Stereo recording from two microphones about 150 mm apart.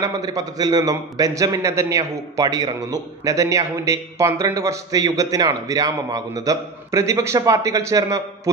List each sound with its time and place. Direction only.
0.0 s a man's voice: 25° right (ahead or behind)